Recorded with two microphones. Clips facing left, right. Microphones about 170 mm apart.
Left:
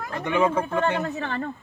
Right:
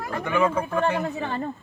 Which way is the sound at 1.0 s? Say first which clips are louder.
Even; 10° right (ahead or behind).